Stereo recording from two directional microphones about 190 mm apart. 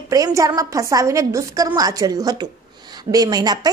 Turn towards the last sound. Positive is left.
turn(degrees=-20)  # may be behind; listen again after turning